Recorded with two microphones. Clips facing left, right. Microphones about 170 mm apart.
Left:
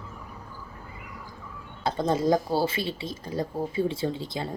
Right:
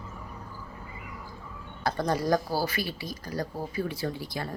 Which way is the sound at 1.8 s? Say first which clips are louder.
Left 3 dB; 20° left (ahead or behind).